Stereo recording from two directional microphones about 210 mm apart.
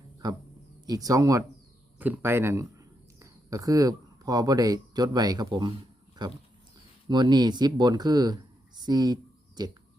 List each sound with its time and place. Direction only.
0.2 s speech: 15° right (ahead or behind)